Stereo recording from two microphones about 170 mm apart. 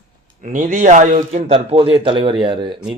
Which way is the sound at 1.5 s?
35° right (ahead or behind).